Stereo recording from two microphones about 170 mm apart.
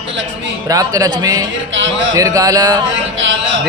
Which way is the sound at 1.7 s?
90° right.